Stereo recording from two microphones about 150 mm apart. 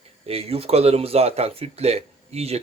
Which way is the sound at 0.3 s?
40° right (ahead or behind).